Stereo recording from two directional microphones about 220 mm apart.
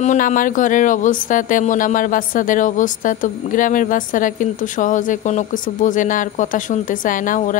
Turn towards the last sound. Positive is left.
turn(degrees=35)  # may be behind; listen again after turning